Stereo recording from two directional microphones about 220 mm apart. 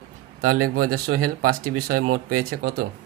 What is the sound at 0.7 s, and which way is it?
Speech, 40° right (ahead or behind).